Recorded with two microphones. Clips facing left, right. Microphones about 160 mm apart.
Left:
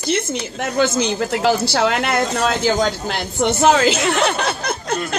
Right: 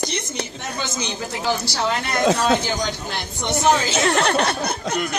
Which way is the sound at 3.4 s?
85° left.